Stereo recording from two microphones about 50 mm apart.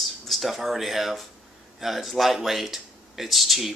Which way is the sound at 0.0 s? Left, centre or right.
Centre.